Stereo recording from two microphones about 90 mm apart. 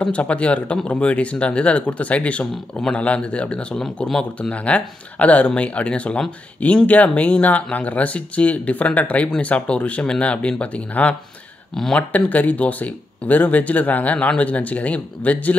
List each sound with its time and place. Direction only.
0.0 s speech: 15° left (ahead or behind)
12.1 s speech: 15° left (ahead or behind)